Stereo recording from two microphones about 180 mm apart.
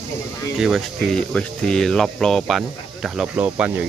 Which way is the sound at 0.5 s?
Centre (ahead or behind).